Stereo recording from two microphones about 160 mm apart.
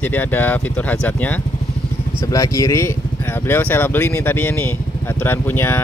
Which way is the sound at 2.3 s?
20° left (ahead or behind).